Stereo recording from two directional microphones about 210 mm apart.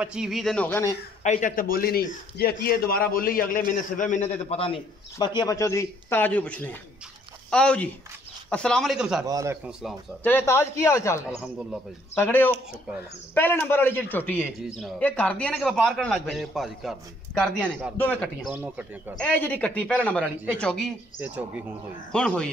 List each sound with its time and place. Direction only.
0.0 s speech: 5° right (ahead or behind)
1.2 s a man's voice: 35° left (ahead or behind); by 9.2 s centre (ahead or behind)
9.2 s a man's voice: 15° right (ahead or behind)
10.2 s a man's voice: 10° left (ahead or behind)
11.2 s speech: centre (ahead or behind)
12.2 s a man's voice: 10° left (ahead or behind)
18.5 s a man's voice: 10° right (ahead or behind)
19.1 s a man's voice: 5° left (ahead or behind)
21.2 s a man's voice: 10° right (ahead or behind)
22.1 s speech: 5° left (ahead or behind)